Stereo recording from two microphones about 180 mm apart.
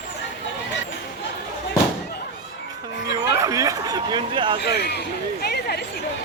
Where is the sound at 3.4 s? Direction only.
20° right (ahead or behind).